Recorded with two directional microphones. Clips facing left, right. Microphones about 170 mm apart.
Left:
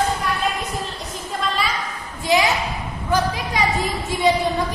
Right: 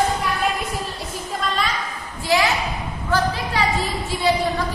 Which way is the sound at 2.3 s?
20° left (ahead or behind).